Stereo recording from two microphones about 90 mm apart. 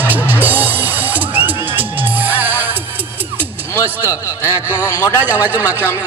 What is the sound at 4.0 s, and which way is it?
A man's voice, 35° left (ahead or behind).